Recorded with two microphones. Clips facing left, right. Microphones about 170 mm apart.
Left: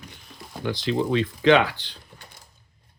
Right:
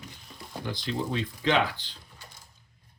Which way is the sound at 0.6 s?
80° left.